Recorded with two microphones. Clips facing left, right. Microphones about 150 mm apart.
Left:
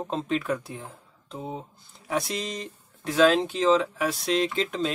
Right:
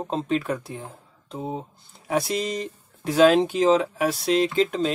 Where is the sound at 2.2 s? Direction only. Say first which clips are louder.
Right 6 dB; 50° right (ahead or behind).